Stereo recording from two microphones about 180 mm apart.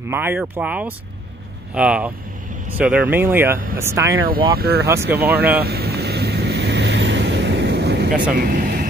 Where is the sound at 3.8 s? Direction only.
15° right (ahead or behind).